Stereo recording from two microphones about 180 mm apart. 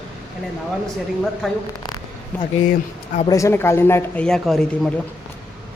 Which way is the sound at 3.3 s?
15° left (ahead or behind).